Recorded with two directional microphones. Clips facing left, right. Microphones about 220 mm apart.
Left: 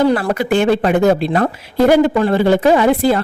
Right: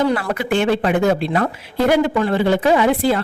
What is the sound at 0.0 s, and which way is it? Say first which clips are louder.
A woman's voice: left 4 dB; 35° left (ahead or behind).